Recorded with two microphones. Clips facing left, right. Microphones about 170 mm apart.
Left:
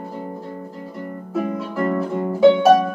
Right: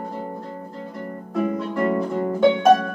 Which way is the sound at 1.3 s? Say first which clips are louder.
Right 1 dB; centre (ahead or behind).